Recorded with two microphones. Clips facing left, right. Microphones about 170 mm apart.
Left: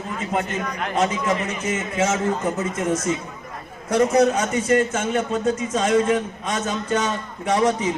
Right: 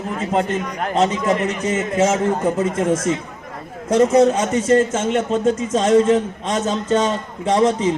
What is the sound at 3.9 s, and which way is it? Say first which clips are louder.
A man's voice: right 4 dB; 25° right (ahead or behind).